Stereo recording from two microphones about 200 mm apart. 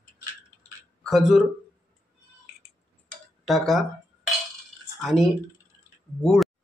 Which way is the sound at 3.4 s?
Centre (ahead or behind).